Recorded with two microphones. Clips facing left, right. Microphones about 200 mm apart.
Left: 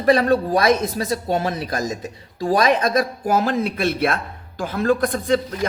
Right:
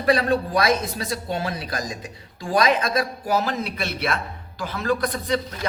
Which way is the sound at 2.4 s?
45° left (ahead or behind).